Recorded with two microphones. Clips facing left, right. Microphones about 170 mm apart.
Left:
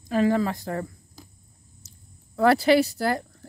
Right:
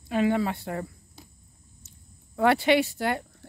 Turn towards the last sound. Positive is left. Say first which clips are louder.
# left 3 dB
turn(degrees=40)  # may be behind; listen again after turning